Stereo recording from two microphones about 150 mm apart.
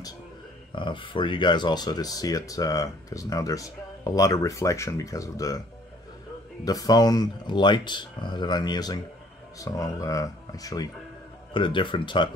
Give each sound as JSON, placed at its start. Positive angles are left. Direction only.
{"t": 0.7, "sound": "speech", "side_deg": 35}
{"t": 6.6, "sound": "speech", "side_deg": 25}